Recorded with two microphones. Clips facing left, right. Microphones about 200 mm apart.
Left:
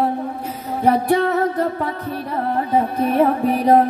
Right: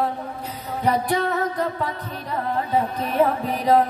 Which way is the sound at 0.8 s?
45° left (ahead or behind).